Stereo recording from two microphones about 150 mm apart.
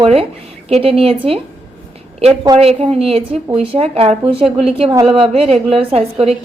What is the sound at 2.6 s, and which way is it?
A woman's voice, 40° right (ahead or behind).